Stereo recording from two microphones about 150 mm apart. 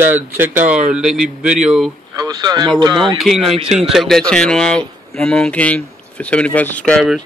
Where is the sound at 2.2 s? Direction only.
25° right (ahead or behind).